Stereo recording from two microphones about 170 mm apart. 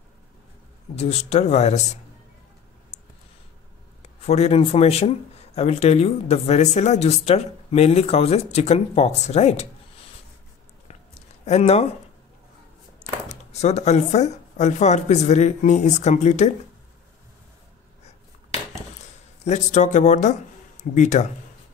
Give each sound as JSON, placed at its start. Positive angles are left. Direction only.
{"t": 0.9, "sound": "speech", "side_deg": 40}
{"t": 4.0, "sound": "speech", "side_deg": 40}
{"t": 10.9, "sound": "a sound", "side_deg": 40}
{"t": 13.3, "sound": "speech", "side_deg": 40}
{"t": 19.4, "sound": "speech", "side_deg": 45}